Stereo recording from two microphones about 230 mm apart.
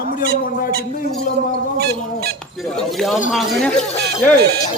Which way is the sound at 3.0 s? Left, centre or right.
Centre.